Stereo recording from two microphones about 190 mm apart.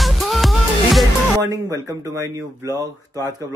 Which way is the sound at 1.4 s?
20° right (ahead or behind).